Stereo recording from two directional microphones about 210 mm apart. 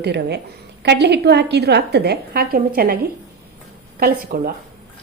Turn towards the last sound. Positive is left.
turn(degrees=-45)  # may be behind; listen again after turning